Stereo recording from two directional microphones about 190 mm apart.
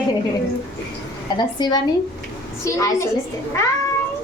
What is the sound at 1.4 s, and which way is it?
A child's voice, 20° left (ahead or behind).